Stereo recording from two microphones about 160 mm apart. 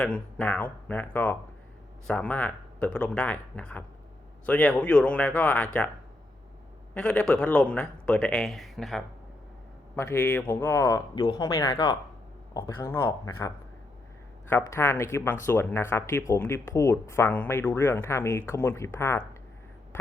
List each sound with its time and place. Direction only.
0.0 s speech: 5° left (ahead or behind)
6.9 s a man's voice: 5° left (ahead or behind)
9.9 s speech: 15° left (ahead or behind)